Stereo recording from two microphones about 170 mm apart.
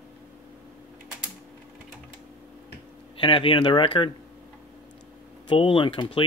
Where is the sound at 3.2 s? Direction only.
30° left (ahead or behind).